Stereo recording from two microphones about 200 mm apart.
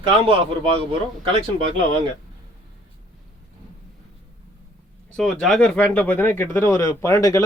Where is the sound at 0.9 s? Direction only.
25° right (ahead or behind).